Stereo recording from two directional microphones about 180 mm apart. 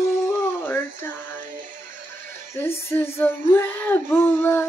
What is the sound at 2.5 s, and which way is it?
Female singing, 10° left (ahead or behind).